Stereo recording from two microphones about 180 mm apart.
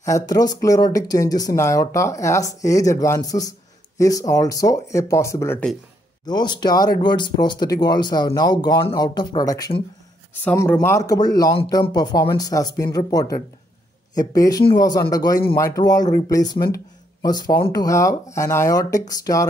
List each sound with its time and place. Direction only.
0.0 s speech: 20° left (ahead or behind)